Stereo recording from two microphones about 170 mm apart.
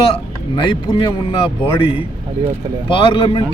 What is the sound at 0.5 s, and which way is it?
Speech, 30° left (ahead or behind).